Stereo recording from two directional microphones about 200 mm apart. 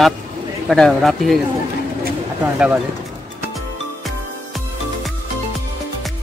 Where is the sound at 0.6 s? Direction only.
Centre (ahead or behind).